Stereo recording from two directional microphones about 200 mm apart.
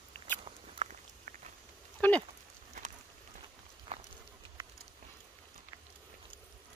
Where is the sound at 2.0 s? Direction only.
5° left (ahead or behind).